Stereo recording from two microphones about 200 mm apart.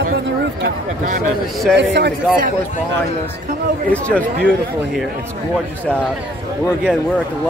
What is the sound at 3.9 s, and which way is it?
Speech, 5° left (ahead or behind).